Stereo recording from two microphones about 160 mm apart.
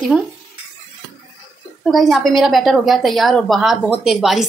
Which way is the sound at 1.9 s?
Centre (ahead or behind).